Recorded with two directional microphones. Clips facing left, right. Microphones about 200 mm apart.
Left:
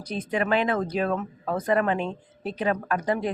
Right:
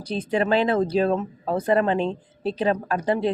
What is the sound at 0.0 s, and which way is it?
Speech, 30° right (ahead or behind).